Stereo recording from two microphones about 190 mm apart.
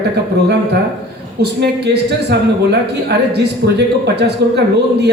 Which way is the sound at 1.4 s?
60° right (ahead or behind).